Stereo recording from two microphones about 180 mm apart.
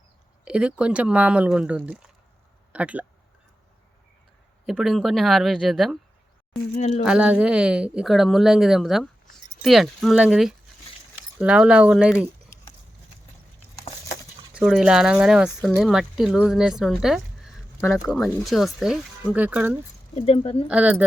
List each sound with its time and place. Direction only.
0.4 s speech: 5° right (ahead or behind)
4.6 s speech: centre (ahead or behind)
6.7 s speech: 40° left (ahead or behind)
7.0 s speech: 5° right (ahead or behind)
14.5 s speech: centre (ahead or behind)
20.1 s speech: 35° left (ahead or behind)
20.7 s speech: 5° right (ahead or behind)